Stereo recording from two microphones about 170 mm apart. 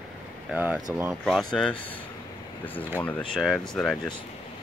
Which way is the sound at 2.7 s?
10° left (ahead or behind).